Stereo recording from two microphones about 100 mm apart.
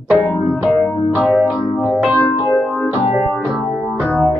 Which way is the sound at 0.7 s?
Centre (ahead or behind).